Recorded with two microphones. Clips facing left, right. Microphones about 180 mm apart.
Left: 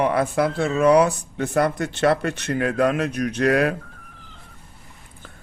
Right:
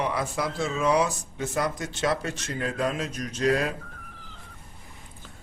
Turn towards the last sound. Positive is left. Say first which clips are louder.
# left 6 dB
turn(degrees=65)  # may be behind; listen again after turning